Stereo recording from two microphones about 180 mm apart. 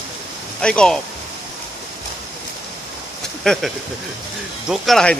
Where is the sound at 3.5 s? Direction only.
5° left (ahead or behind).